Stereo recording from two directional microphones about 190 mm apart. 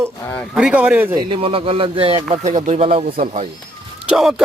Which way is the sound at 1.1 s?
25° right (ahead or behind).